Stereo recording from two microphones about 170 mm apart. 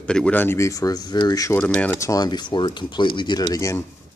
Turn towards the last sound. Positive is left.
turn(degrees=20)  # may be behind; listen again after turning